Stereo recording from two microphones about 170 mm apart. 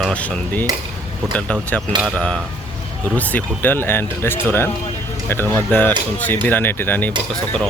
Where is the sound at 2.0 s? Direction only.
5° left (ahead or behind).